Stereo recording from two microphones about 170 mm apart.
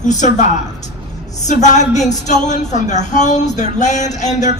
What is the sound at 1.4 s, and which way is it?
A woman's voice, 45° left (ahead or behind).